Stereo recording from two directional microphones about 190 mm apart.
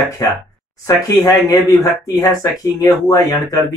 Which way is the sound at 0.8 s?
15° left (ahead or behind).